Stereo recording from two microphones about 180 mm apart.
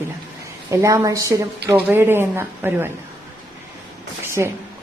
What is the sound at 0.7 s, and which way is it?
Speech, 15° right (ahead or behind).